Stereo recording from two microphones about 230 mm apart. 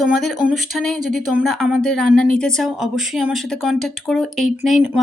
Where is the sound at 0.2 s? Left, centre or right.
Centre.